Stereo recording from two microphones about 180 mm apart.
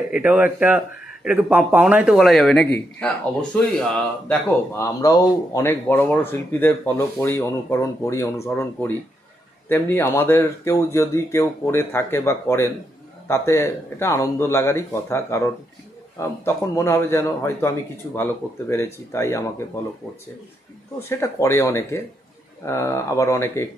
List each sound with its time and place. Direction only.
0.1 s a man's voice: 5° right (ahead or behind); by 19.8 s 15° left (ahead or behind)
21.2 s a man's voice: 15° left (ahead or behind)